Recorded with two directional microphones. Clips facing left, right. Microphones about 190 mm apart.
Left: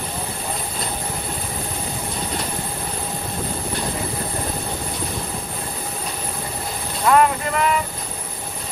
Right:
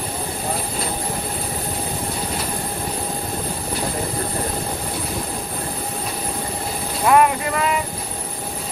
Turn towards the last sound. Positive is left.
turn(degrees=-20)  # may be behind; listen again after turning